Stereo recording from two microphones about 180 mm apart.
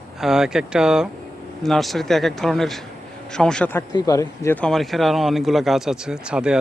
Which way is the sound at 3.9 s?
20° left (ahead or behind).